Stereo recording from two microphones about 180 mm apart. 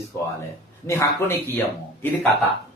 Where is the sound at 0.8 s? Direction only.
15° left (ahead or behind).